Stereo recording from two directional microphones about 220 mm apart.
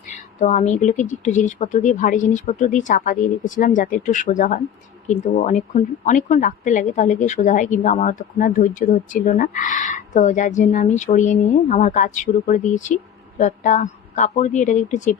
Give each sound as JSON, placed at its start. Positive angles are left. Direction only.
{"t": 0.1, "sound": "a woman's voice", "side_deg": 30}